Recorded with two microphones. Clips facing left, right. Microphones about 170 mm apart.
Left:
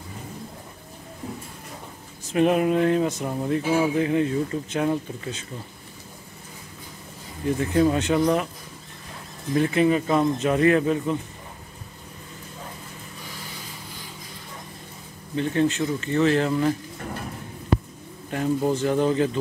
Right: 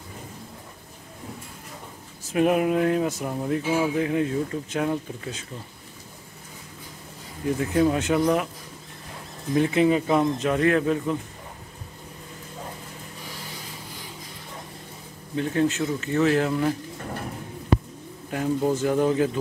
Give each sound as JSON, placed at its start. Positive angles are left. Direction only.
{"t": 2.3, "sound": "speech", "side_deg": -5}
{"t": 7.5, "sound": "speech", "side_deg": -5}
{"t": 9.6, "sound": "speech", "side_deg": -15}
{"t": 10.4, "sound": "speech", "side_deg": 5}
{"t": 15.3, "sound": "speech", "side_deg": -5}
{"t": 18.3, "sound": "speech", "side_deg": -5}